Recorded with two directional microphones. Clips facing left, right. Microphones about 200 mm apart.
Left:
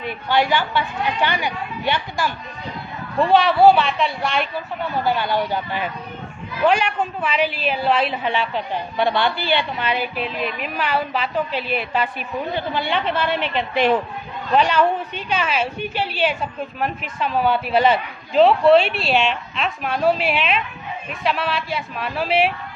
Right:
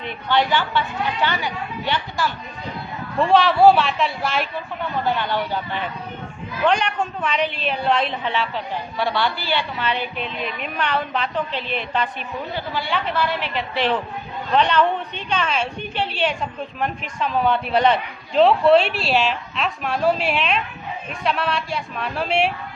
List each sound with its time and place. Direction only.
0.0 s a woman's voice: 10° left (ahead or behind)
3.2 s a woman's voice: centre (ahead or behind)
5.0 s a woman's voice: 10° left (ahead or behind)
12.5 s a woman's voice: 25° left (ahead or behind); by 22.5 s centre (ahead or behind)